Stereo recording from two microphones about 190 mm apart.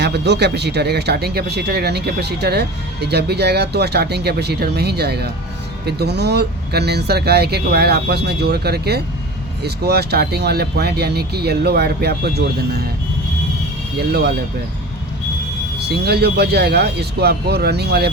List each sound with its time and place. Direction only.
0.0 s speech: 60° right (ahead or behind)
14.1 s speech: 55° right (ahead or behind)
15.8 s speech: 60° right (ahead or behind)